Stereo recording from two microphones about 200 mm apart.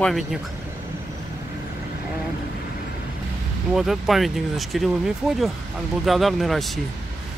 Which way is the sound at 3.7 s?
Centre (ahead or behind).